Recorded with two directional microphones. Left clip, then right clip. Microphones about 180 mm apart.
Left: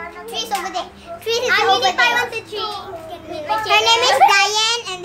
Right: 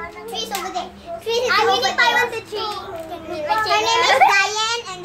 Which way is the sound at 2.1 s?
10° left (ahead or behind).